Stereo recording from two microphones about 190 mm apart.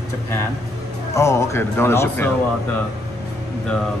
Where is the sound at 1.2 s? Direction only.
15° left (ahead or behind).